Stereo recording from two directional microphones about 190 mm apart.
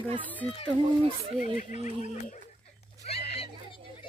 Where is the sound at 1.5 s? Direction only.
40° left (ahead or behind).